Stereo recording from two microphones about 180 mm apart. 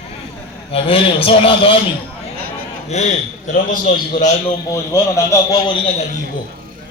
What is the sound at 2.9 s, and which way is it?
A man's voice, 40° left (ahead or behind).